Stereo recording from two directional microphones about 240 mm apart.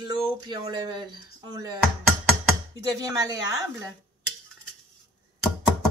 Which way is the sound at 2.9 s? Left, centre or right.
Centre.